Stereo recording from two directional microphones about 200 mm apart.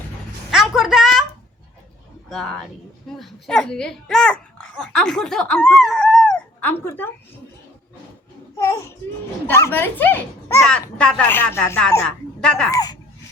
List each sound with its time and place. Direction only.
0.5 s a sound: centre (ahead or behind)
2.3 s a child's voice: centre (ahead or behind)
8.5 s a child's voice: 15° left (ahead or behind)
12.7 s a child's voice: 20° left (ahead or behind)